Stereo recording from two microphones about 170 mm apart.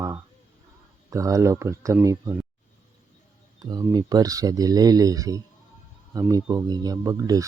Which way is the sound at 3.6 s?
20° right (ahead or behind).